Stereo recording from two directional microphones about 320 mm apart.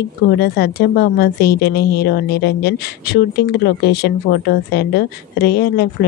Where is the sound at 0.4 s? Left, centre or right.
Left.